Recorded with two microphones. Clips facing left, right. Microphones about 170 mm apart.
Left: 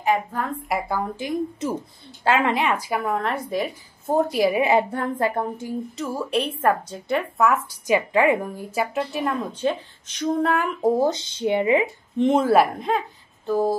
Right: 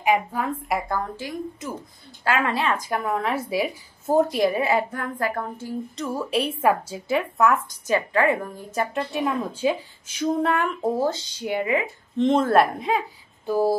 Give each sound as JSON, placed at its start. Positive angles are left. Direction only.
{"t": 0.0, "sound": "speech", "side_deg": -10}
{"t": 1.1, "sound": "speech", "side_deg": 25}
{"t": 4.6, "sound": "speech", "side_deg": 20}
{"t": 5.9, "sound": "speech", "side_deg": 0}
{"t": 7.8, "sound": "speech", "side_deg": 15}
{"t": 11.0, "sound": "speech", "side_deg": 20}
{"t": 12.2, "sound": "speech", "side_deg": 10}
{"t": 13.5, "sound": "a sound", "side_deg": -10}